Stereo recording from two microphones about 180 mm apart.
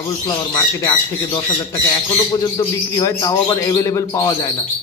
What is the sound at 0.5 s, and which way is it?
Speech, 20° left (ahead or behind).